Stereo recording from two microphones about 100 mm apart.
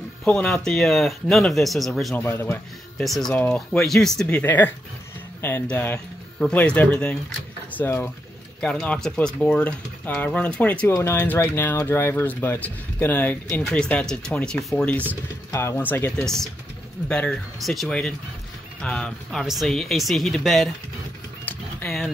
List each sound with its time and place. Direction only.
0.2 s speech: 5° left (ahead or behind)
2.1 s speech: 25° left (ahead or behind)
3.0 s speech: 5° left (ahead or behind)
4.3 s speech: 15° left (ahead or behind)
8.5 s speech: 5° left (ahead or behind)
10.9 s speech: 25° left (ahead or behind)
13.5 s speech: 5° left (ahead or behind)
15.5 s speech: 30° left (ahead or behind)
15.8 s speech: 20° left (ahead or behind)
16.2 s speech: 5° left (ahead or behind)
21.8 s speech: 5° left (ahead or behind)